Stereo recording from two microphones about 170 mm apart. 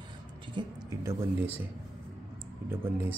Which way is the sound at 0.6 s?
25° right (ahead or behind).